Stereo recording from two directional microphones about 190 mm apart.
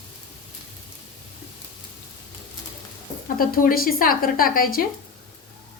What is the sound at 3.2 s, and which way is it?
Speech, 50° left (ahead or behind).